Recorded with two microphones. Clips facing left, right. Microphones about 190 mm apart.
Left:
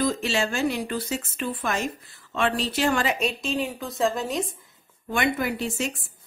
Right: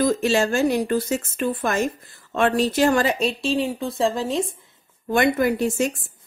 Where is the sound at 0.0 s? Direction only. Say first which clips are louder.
Right 5 dB; 45° right (ahead or behind); by 5.1 s 30° right (ahead or behind).